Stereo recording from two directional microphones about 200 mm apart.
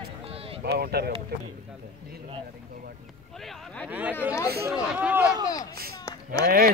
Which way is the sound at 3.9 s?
10° right (ahead or behind).